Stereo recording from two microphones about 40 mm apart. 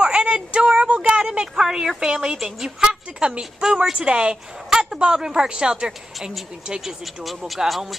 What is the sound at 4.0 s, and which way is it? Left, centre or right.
Speech, right.